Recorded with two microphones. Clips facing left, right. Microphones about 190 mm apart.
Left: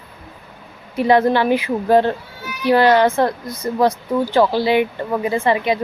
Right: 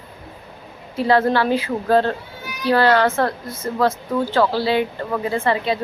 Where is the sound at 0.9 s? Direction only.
15° left (ahead or behind).